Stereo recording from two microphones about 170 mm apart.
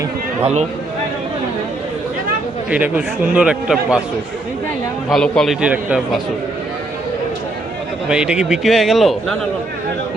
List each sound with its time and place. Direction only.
0.4 s speech: 40° right (ahead or behind)
2.6 s a man's voice: 10° right (ahead or behind)
5.0 s a man's voice: 5° left (ahead or behind)
8.1 s a man's voice: 5° right (ahead or behind)